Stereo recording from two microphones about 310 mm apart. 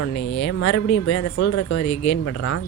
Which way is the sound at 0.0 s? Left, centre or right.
Left.